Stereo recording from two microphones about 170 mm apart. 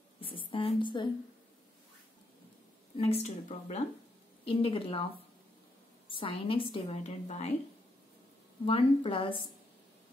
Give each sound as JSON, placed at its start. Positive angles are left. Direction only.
{"t": 0.2, "sound": "a sound", "side_deg": 30}
{"t": 3.0, "sound": "a woman's voice", "side_deg": 35}
{"t": 6.0, "sound": "a woman's voice", "side_deg": 30}
{"t": 8.6, "sound": "a woman's voice", "side_deg": 30}